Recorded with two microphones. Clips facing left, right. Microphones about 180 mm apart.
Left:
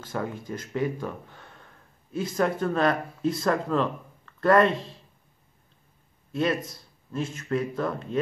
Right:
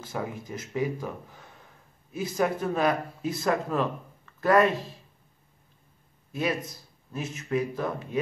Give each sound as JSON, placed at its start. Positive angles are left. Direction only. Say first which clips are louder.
{"t": 0.0, "sound": "speech", "louder": "left 2 dB", "side_deg": -10}
{"t": 7.1, "sound": "speech", "louder": "left 2 dB", "side_deg": -5}